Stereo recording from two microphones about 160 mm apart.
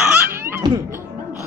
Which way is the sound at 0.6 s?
20° right (ahead or behind).